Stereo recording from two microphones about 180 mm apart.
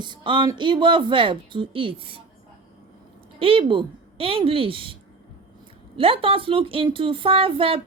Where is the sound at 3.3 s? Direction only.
30° right (ahead or behind).